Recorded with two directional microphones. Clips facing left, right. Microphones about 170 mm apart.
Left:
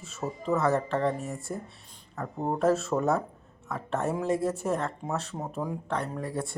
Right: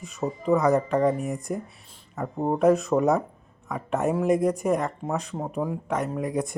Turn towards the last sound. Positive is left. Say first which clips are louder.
# right 6 dB
turn(degrees=-15)  # may be behind; listen again after turning